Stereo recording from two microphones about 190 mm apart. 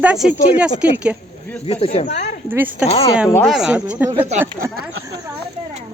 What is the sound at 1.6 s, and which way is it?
Speech, 30° left (ahead or behind).